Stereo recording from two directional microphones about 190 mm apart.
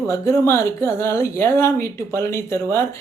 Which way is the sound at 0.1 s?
15° left (ahead or behind).